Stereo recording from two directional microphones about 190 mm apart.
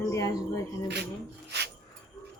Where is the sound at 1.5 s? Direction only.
60° right (ahead or behind).